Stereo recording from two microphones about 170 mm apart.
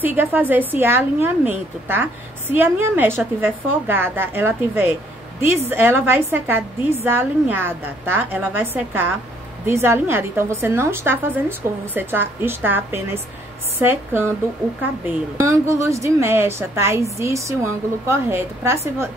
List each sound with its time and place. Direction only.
0.0 s a woman's voice: 10° right (ahead or behind)